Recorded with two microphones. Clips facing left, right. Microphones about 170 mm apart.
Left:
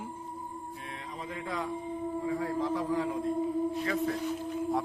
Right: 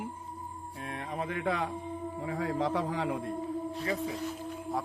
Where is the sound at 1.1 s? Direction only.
65° right (ahead or behind).